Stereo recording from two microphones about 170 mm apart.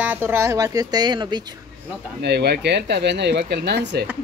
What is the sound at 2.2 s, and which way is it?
Speech, 75° right (ahead or behind).